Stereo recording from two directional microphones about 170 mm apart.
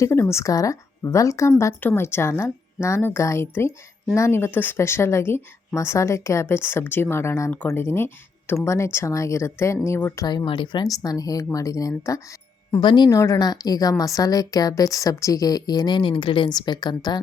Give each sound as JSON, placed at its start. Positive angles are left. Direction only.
{"t": 0.0, "sound": "speech", "side_deg": 15}
{"t": 10.2, "sound": "a woman's voice", "side_deg": 25}